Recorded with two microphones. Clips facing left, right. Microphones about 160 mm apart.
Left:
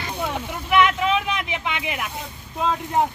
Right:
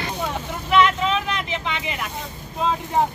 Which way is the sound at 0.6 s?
10° left (ahead or behind).